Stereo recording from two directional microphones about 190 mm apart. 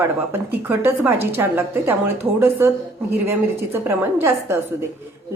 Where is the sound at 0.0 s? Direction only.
10° right (ahead or behind).